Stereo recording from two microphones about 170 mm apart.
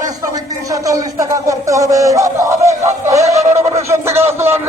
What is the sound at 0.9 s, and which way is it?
Speech, 20° right (ahead or behind).